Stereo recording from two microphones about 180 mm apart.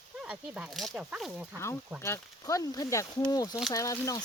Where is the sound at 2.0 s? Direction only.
15° left (ahead or behind).